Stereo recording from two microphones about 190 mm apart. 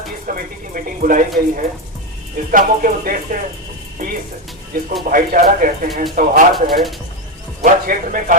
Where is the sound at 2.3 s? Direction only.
45° right (ahead or behind).